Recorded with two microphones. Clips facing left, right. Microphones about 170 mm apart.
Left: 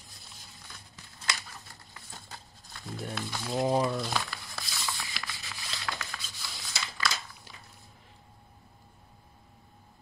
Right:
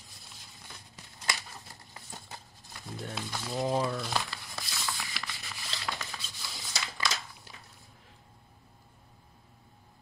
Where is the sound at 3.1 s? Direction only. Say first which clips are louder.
Left 3 dB; 5° right (ahead or behind).